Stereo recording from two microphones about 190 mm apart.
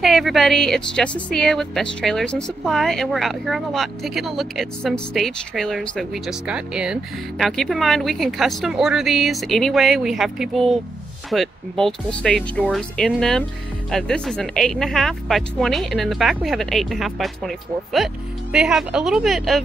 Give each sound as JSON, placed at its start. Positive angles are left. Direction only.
{"t": 0.0, "sound": "a woman's voice", "side_deg": 0}